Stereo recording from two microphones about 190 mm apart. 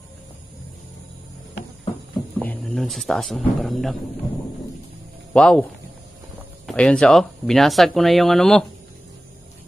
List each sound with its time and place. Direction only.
2.4 s speech: 5° left (ahead or behind)
5.3 s speech: 5° left (ahead or behind)